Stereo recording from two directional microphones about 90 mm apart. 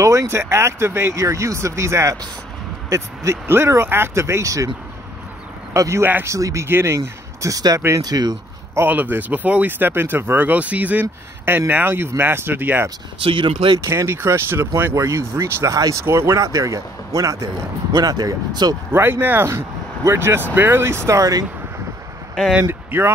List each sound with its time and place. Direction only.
0.0 s speech: 35° right (ahead or behind)
5.7 s speech: 35° right (ahead or behind)
8.7 s speech: 20° right (ahead or behind)
13.2 s speech: 85° right
13.8 s speech: 30° right (ahead or behind)
17.9 s speech: 45° right (ahead or behind)
18.9 s speech: 25° right (ahead or behind); by 21.5 s 40° right (ahead or behind)
22.3 s speech: 5° right (ahead or behind)
22.6 s speech: 25° right (ahead or behind)